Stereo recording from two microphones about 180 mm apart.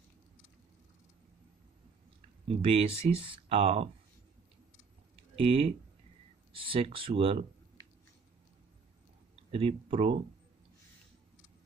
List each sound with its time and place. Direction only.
2.4 s speech: 35° right (ahead or behind)
5.1 s a sound: 30° right (ahead or behind)
6.5 s speech: 30° right (ahead or behind)
9.5 s speech: 30° right (ahead or behind)